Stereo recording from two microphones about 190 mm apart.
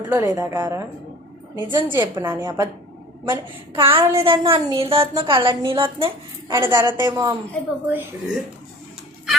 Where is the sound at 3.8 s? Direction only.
30° right (ahead or behind).